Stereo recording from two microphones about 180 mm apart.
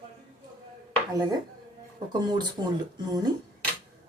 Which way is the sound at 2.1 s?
25° right (ahead or behind).